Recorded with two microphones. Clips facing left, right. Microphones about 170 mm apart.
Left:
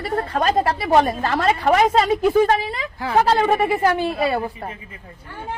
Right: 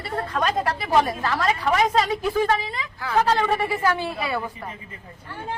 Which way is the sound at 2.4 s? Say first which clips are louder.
Left 4 dB; 40° left (ahead or behind).